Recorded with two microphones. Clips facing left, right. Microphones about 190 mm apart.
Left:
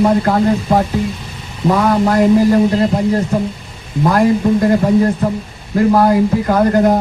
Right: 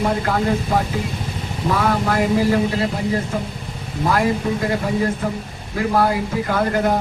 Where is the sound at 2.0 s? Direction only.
40° left (ahead or behind).